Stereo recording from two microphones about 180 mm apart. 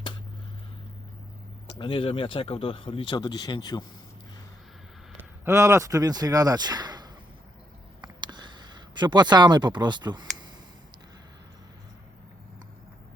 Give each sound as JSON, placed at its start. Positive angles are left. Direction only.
{"t": 1.8, "sound": "speech", "side_deg": 30}
{"t": 5.1, "sound": "speech", "side_deg": -15}
{"t": 8.0, "sound": "a sound", "side_deg": -25}